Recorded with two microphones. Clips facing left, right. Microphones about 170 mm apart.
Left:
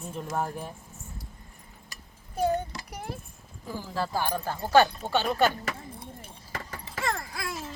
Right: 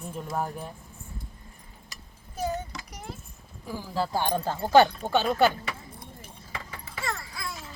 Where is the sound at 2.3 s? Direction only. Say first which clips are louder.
Left 4 dB; 55° left (ahead or behind).